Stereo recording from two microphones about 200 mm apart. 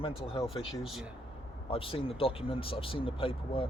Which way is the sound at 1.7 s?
30° left (ahead or behind).